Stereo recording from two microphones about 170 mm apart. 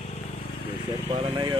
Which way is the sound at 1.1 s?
30° right (ahead or behind).